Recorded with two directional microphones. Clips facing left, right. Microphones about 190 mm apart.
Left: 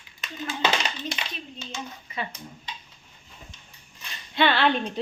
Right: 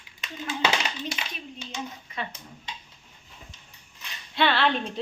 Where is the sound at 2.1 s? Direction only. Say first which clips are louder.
Left 3 dB; 5° left (ahead or behind).